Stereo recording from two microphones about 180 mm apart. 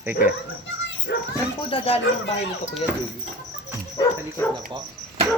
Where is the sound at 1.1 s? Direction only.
65° left (ahead or behind).